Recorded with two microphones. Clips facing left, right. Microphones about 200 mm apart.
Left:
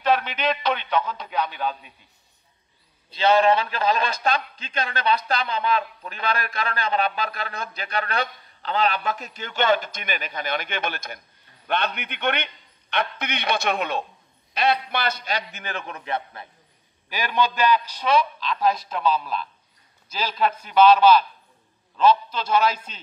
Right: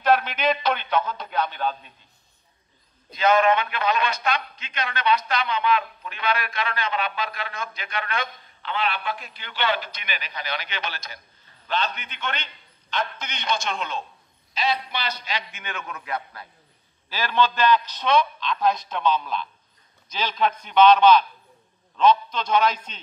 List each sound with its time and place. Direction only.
0.0 s music: 5° right (ahead or behind)
1.3 s a man's voice: 10° left (ahead or behind)
3.1 s a man's voice: 30° left (ahead or behind)
17.1 s a man's voice: 15° left (ahead or behind)